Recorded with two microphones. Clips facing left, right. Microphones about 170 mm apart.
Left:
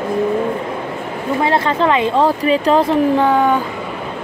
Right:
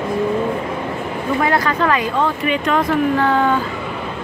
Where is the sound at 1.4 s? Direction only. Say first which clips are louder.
Left 3 dB; 25° left (ahead or behind).